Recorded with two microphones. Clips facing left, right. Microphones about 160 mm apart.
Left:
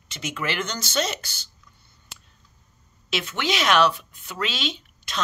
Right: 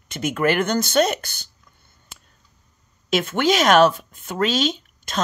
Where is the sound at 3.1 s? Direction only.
45° right (ahead or behind).